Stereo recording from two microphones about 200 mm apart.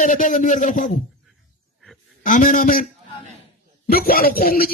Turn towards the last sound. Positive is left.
turn(degrees=45)  # may be behind; listen again after turning